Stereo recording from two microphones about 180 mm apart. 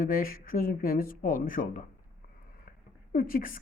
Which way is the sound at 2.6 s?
50° left (ahead or behind).